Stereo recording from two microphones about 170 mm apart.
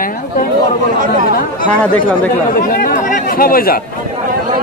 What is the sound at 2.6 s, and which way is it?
A man's voice, 55° left (ahead or behind).